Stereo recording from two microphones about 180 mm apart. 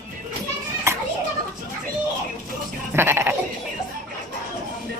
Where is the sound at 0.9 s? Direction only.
15° right (ahead or behind).